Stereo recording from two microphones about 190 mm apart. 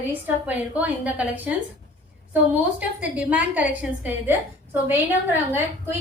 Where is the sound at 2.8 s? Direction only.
5° right (ahead or behind).